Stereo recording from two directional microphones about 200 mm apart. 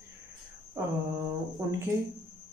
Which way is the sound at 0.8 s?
10° right (ahead or behind).